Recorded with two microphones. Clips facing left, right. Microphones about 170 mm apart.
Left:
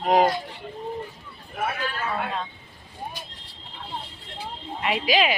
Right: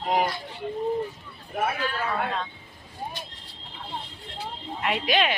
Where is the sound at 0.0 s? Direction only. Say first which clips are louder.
Left 5 dB; 80° left.